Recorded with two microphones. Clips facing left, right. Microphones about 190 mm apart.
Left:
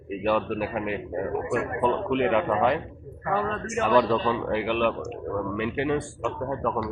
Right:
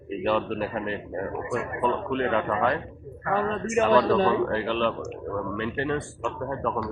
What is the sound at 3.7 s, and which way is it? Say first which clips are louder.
Speech: right 4 dB; 20° right (ahead or behind).